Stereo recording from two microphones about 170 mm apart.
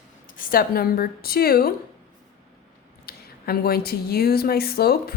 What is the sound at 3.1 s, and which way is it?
A woman's voice, 65° left (ahead or behind).